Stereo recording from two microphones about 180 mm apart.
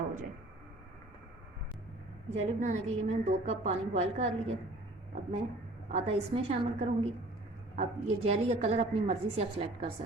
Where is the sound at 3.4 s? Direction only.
35° right (ahead or behind).